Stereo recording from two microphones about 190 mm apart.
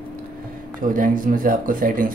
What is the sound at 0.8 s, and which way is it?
Speech, 45° right (ahead or behind).